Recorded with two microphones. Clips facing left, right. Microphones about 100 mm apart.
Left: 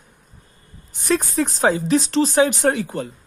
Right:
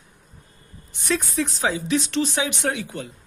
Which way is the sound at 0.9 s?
40° left (ahead or behind).